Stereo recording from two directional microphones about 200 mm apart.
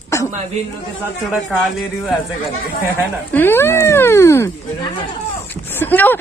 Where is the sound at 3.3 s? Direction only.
10° left (ahead or behind).